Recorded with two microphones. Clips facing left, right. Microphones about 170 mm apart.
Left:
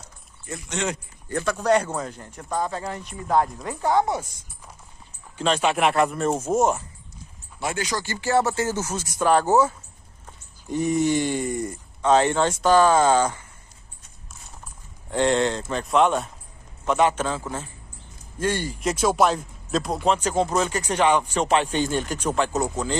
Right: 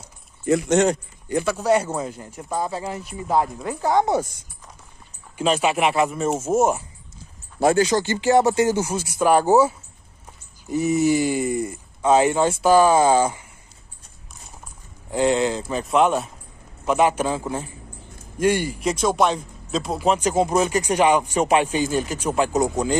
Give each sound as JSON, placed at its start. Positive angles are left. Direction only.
{"t": 0.7, "sound": "speech", "side_deg": -45}
{"t": 1.3, "sound": "speech", "side_deg": -10}
{"t": 5.4, "sound": "speech", "side_deg": -5}
{"t": 7.6, "sound": "speech", "side_deg": -30}
{"t": 15.0, "sound": "speech", "side_deg": -5}
{"t": 18.8, "sound": "speech", "side_deg": 0}